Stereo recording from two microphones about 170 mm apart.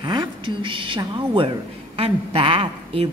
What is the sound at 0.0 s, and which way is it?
A woman's voice, 25° right (ahead or behind).